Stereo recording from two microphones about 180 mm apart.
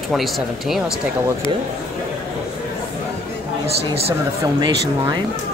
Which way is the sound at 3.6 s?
35° right (ahead or behind).